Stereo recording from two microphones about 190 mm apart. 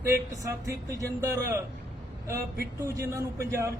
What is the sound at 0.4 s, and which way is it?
Speech, 15° right (ahead or behind).